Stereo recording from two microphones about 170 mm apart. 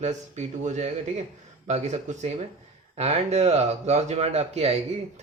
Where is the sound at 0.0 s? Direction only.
45° right (ahead or behind).